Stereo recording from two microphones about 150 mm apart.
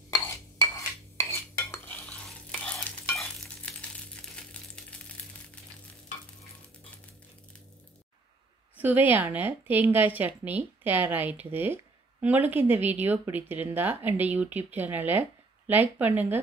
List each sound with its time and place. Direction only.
0.1 s cutlery: 20° left (ahead or behind)
1.9 s stir: 10° left (ahead or behind)
8.7 s a woman's voice: 10° right (ahead or behind)